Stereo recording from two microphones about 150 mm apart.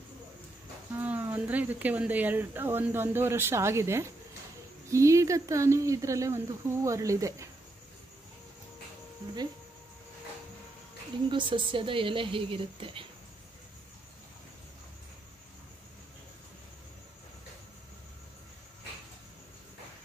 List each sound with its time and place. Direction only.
0.9 s speech: 10° right (ahead or behind)
11.2 s a woman's voice: 35° right (ahead or behind)